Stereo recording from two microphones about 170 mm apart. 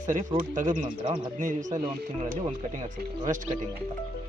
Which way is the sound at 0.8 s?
35° right (ahead or behind).